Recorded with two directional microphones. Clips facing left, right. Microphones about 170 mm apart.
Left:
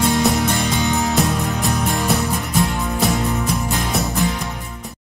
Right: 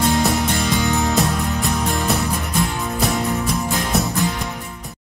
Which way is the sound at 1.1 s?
Centre (ahead or behind).